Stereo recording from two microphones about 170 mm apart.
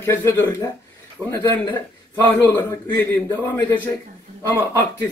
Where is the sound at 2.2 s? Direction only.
10° left (ahead or behind).